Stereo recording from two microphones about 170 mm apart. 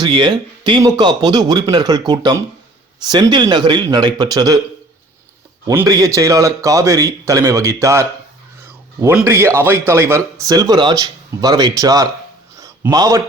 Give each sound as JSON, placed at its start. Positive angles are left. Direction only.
{"t": 0.0, "sound": "speech", "side_deg": -25}
{"t": 5.6, "sound": "a man's voice", "side_deg": -20}
{"t": 12.5, "sound": "a sound", "side_deg": -20}